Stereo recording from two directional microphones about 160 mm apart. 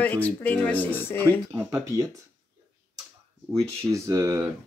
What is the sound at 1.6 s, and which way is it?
Speech, 20° right (ahead or behind).